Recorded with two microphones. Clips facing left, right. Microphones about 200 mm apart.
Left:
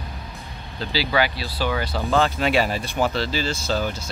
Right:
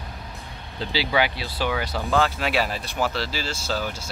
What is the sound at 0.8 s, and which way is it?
Speech, 20° right (ahead or behind).